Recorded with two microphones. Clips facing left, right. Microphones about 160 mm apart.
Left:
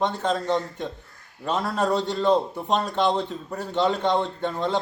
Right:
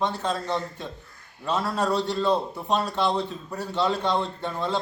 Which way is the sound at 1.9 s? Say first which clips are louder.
Left 3 dB; 20° left (ahead or behind).